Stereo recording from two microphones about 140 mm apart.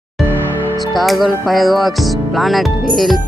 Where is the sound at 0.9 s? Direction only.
Centre (ahead or behind).